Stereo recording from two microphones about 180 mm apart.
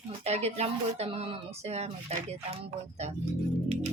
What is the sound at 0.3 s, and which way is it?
Speech, 35° right (ahead or behind).